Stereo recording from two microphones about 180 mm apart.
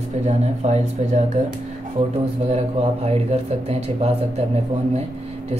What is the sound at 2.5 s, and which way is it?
Speech, 35° right (ahead or behind).